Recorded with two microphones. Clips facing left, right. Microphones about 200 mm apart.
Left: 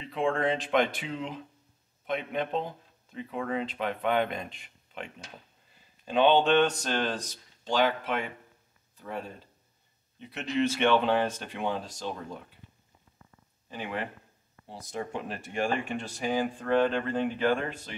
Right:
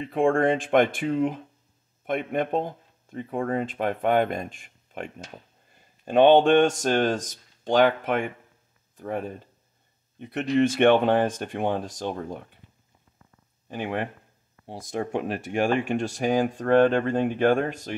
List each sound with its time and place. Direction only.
0.0 s a man's voice: 50° right (ahead or behind)
13.7 s speech: 50° right (ahead or behind); by 16.0 s 75° right (ahead or behind)
16.3 s a man's voice: 45° right (ahead or behind)